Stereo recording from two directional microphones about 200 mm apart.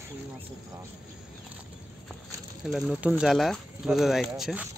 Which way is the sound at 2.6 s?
5° right (ahead or behind).